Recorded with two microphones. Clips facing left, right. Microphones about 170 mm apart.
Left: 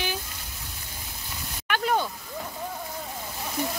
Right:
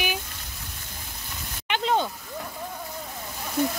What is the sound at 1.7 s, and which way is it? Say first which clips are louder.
Vehicle: right 1 dB; 20° right (ahead or behind).